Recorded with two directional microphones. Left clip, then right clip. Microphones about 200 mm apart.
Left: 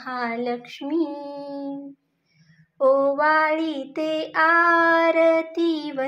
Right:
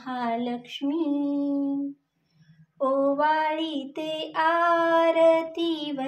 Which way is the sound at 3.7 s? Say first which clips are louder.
Left 5 dB; 15° left (ahead or behind).